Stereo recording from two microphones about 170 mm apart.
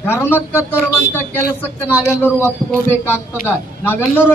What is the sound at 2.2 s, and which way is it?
Speech, 10° left (ahead or behind).